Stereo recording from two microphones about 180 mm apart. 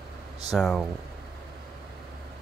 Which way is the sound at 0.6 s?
Centre (ahead or behind).